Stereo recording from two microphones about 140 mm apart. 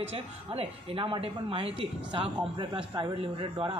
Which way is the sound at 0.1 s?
40° right (ahead or behind).